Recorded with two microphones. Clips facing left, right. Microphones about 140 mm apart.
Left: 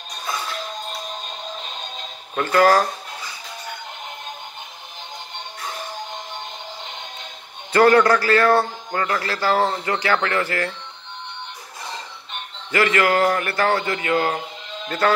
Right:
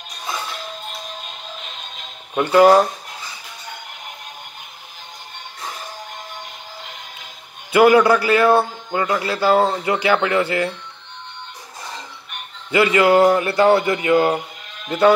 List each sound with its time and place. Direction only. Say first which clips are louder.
2.3 s speech: right 4 dB; 20° right (ahead or behind)
7.7 s a man's voice: right 2 dB; 10° right (ahead or behind)
12.7 s a man's voice: right 5 dB; 15° right (ahead or behind)